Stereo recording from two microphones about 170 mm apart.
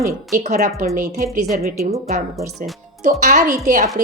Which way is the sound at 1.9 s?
40° right (ahead or behind).